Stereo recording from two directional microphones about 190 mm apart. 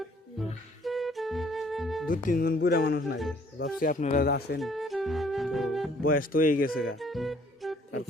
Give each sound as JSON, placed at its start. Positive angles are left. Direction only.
{"t": 0.9, "sound": "music", "side_deg": 0}
{"t": 2.0, "sound": "speech", "side_deg": 45}
{"t": 3.6, "sound": "speech", "side_deg": 45}
{"t": 4.6, "sound": "music", "side_deg": 0}
{"t": 6.1, "sound": "speech", "side_deg": 50}
{"t": 7.0, "sound": "music", "side_deg": 0}